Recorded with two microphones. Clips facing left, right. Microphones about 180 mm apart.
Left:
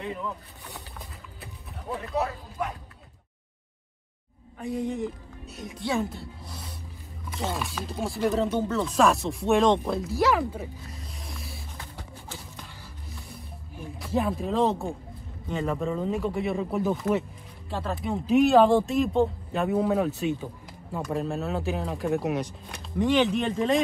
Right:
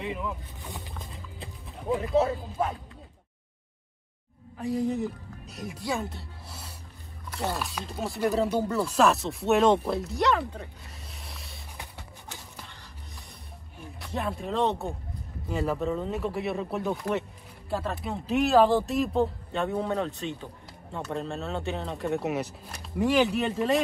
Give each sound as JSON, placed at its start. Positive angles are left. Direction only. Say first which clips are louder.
{"t": 0.0, "sound": "speech", "louder": "even", "side_deg": 0}
{"t": 5.6, "sound": "speech", "louder": "left 3 dB", "side_deg": 0}
{"t": 10.3, "sound": "speech", "louder": "left 2 dB", "side_deg": 15}
{"t": 10.6, "sound": "music", "louder": "left 5 dB", "side_deg": 0}
{"t": 13.9, "sound": "speech", "louder": "left 5 dB", "side_deg": 0}